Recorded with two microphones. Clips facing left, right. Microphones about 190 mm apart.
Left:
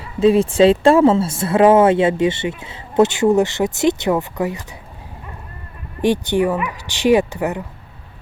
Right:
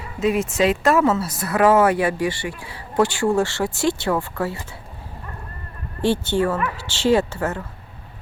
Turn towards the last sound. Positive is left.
turn(degrees=15)  # may be behind; listen again after turning